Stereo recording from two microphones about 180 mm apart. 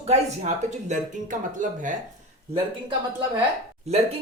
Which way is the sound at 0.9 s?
45° right (ahead or behind).